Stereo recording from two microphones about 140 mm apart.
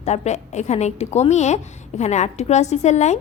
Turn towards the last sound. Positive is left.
turn(degrees=55)  # may be behind; listen again after turning